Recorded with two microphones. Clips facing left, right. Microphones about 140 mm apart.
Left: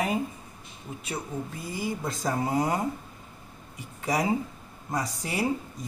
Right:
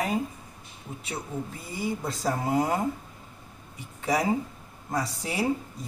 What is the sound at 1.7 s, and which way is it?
Speech, centre (ahead or behind).